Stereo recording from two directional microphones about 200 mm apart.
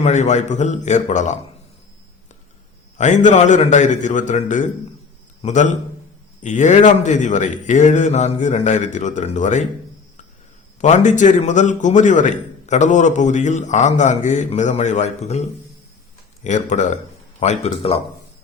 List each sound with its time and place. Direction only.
0.0 s a man's voice: 35° left (ahead or behind)
3.0 s a man's voice: 40° left (ahead or behind)
10.8 s a man's voice: 35° left (ahead or behind)